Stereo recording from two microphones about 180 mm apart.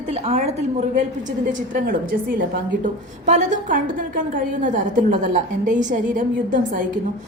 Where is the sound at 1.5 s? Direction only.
50° right (ahead or behind).